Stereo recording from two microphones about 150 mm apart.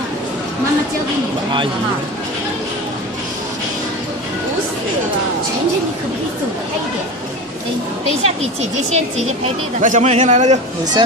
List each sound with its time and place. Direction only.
8.2 s speech: 45° right (ahead or behind)